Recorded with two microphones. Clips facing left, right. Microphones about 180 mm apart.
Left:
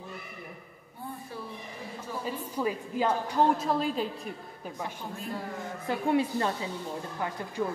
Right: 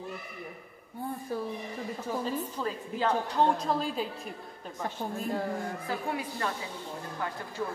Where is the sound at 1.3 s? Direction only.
45° right (ahead or behind).